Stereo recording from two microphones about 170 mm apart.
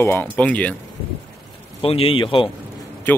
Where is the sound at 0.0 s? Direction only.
10° left (ahead or behind).